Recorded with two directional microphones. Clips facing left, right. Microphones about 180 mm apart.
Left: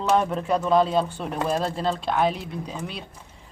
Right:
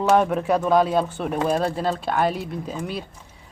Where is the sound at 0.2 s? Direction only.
10° right (ahead or behind).